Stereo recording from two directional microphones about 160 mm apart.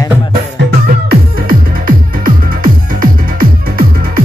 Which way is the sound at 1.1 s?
65° right (ahead or behind).